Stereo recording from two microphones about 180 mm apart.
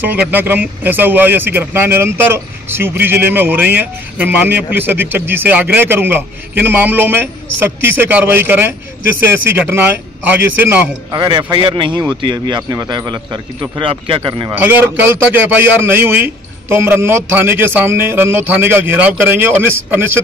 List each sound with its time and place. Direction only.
0.3 s a man's voice: 10° right (ahead or behind)
11.1 s speech: 25° right (ahead or behind)
14.5 s a man's voice: 10° right (ahead or behind)